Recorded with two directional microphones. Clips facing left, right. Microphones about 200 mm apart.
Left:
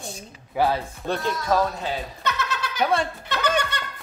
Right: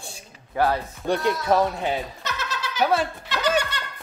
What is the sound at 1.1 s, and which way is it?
Speech, 15° right (ahead or behind).